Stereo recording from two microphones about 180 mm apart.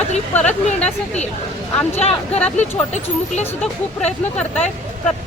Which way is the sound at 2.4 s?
5° left (ahead or behind).